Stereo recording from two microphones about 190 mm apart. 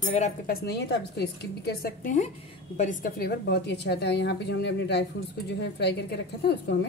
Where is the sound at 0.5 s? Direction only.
60° left (ahead or behind).